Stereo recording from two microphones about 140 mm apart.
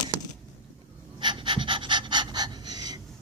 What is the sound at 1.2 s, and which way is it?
Pant, 35° right (ahead or behind).